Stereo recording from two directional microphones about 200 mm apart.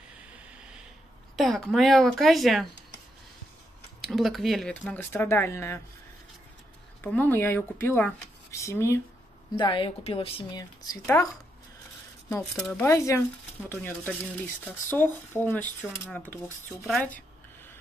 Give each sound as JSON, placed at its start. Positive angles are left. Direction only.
{"t": 1.3, "sound": "speech", "side_deg": 0}
{"t": 4.0, "sound": "speech", "side_deg": 0}
{"t": 7.0, "sound": "a woman's voice", "side_deg": 10}
{"t": 10.9, "sound": "speech", "side_deg": 10}
{"t": 12.5, "sound": "speech", "side_deg": 5}
{"t": 12.9, "sound": "speech", "side_deg": 15}